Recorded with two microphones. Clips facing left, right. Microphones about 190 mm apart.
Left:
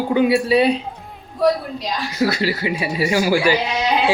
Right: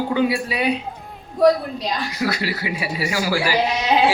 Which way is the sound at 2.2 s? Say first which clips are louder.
Left 8 dB; 30° left (ahead or behind).